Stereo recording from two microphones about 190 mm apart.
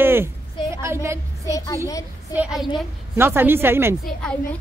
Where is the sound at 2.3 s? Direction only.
5° right (ahead or behind).